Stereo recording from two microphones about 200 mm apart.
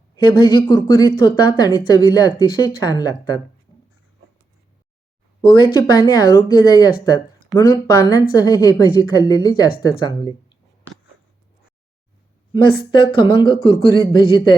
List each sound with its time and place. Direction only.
0.2 s speech: 20° left (ahead or behind)
5.4 s speech: 20° left (ahead or behind)
12.5 s speech: 25° left (ahead or behind)